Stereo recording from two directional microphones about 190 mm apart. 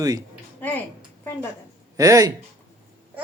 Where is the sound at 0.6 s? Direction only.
10° left (ahead or behind).